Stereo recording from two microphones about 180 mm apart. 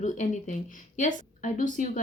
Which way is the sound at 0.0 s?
45° left (ahead or behind).